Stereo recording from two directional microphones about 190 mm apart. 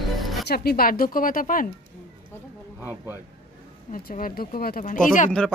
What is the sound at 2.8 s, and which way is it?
Speech, 10° right (ahead or behind).